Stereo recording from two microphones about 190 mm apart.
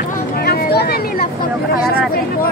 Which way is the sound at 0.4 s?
55° left (ahead or behind).